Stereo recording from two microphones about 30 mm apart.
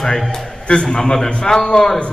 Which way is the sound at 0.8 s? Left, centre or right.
Left.